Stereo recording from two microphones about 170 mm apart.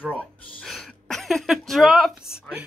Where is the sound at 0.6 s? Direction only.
5° left (ahead or behind).